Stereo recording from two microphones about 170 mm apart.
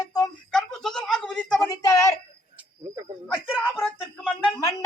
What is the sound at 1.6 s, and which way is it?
Music, 20° left (ahead or behind).